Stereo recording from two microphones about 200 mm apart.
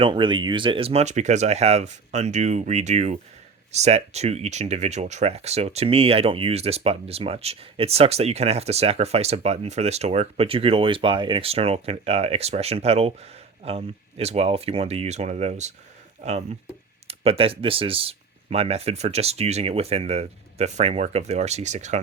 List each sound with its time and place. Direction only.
0.0 s speech: 25° right (ahead or behind)
17.1 s speech: 30° right (ahead or behind)